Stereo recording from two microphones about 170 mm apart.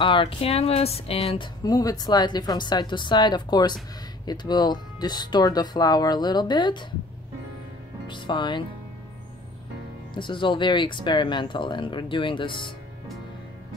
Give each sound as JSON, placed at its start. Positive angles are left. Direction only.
{"t": 0.0, "sound": "speech", "side_deg": 30}
{"t": 1.6, "sound": "speech", "side_deg": 20}
{"t": 8.1, "sound": "speech", "side_deg": 30}
{"t": 10.1, "sound": "speech", "side_deg": 30}